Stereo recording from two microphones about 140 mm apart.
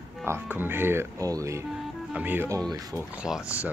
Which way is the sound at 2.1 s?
10° right (ahead or behind).